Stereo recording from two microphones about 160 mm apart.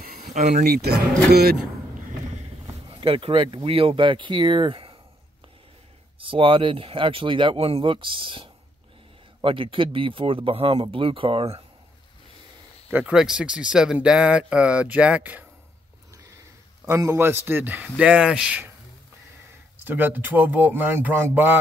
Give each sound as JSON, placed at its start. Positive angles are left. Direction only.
{"t": 0.0, "sound": "a sound", "side_deg": -65}
{"t": 0.4, "sound": "speech", "side_deg": -45}
{"t": 0.7, "sound": "speech", "side_deg": -90}
{"t": 2.9, "sound": "speech", "side_deg": -35}
{"t": 6.1, "sound": "speech", "side_deg": -35}
{"t": 12.9, "sound": "speech", "side_deg": -5}
{"t": 16.8, "sound": "speech", "side_deg": -20}
{"t": 19.8, "sound": "speech", "side_deg": -10}